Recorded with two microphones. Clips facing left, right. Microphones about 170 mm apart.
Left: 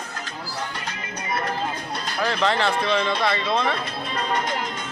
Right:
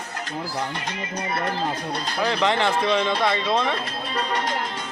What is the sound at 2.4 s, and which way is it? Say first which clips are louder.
Speech: even; 20° right (ahead or behind).